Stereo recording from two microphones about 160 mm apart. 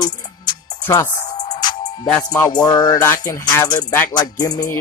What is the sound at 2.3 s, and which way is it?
Music, 25° left (ahead or behind).